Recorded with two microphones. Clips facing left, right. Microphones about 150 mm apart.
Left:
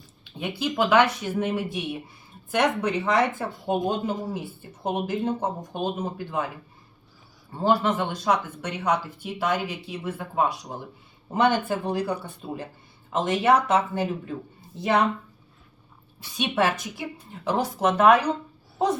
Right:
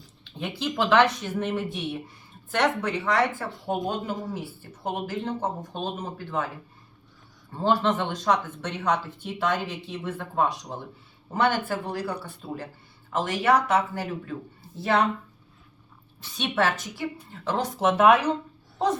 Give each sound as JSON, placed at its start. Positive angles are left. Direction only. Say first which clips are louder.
{"t": 0.3, "sound": "speech", "louder": "left 2 dB", "side_deg": 10}
{"t": 7.5, "sound": "speech", "louder": "left 1 dB", "side_deg": 10}
{"t": 16.2, "sound": "speech", "louder": "left 1 dB", "side_deg": 10}
{"t": 17.7, "sound": "speech", "louder": "even", "side_deg": -5}